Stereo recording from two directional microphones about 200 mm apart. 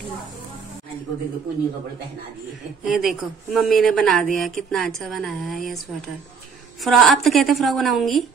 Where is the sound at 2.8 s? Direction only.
Centre (ahead or behind).